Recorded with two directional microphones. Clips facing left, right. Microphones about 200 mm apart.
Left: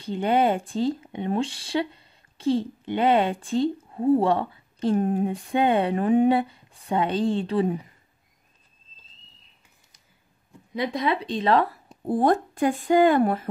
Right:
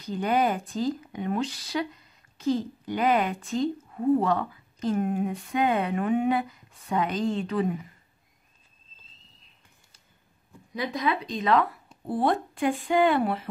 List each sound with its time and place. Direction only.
0.0 s speech: 25° left (ahead or behind)
10.7 s speech: 30° left (ahead or behind); by 13.5 s 45° left (ahead or behind)